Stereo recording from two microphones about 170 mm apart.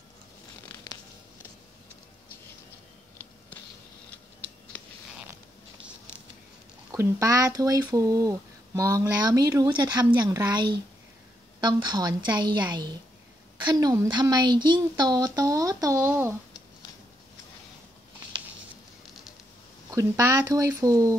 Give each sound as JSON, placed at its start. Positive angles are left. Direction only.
{"t": 6.9, "sound": "speech", "side_deg": -20}
{"t": 19.9, "sound": "speech", "side_deg": -20}